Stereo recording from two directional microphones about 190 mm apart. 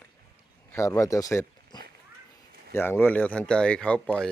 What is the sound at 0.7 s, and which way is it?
Speech, 15° left (ahead or behind).